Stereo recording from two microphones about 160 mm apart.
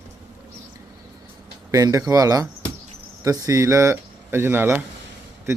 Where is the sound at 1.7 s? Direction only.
20° right (ahead or behind).